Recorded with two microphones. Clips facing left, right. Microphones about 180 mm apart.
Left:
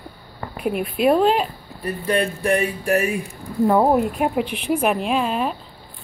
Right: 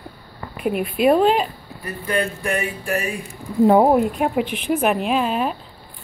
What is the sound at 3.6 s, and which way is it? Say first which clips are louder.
Speech: right 3 dB; 20° right (ahead or behind).